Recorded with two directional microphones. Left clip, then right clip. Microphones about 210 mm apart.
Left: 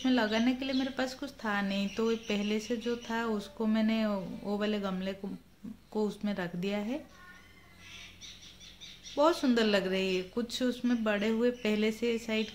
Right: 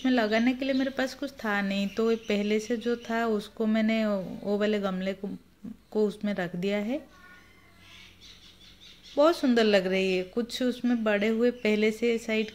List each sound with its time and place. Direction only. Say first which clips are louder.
0.0 s speech: right 4 dB; 15° right (ahead or behind)
9.1 s speech: right 4 dB; 15° right (ahead or behind)